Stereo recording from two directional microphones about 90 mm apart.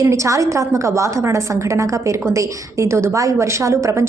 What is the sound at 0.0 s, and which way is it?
A woman's voice, 35° right (ahead or behind).